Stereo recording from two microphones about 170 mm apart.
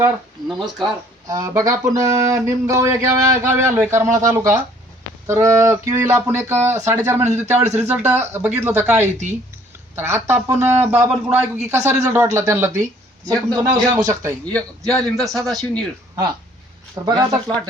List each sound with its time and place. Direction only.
0.4 s a man's voice: centre (ahead or behind)
1.3 s speech: 20° right (ahead or behind)
7.5 s speech: 40° right (ahead or behind)
7.8 s speech: 10° right (ahead or behind)
9.9 s speech: 15° right (ahead or behind)
11.8 s speech: 40° right (ahead or behind)
12.1 s speech: 15° right (ahead or behind)
14.5 s a man's voice: 5° left (ahead or behind)
17.0 s speech: 20° right (ahead or behind)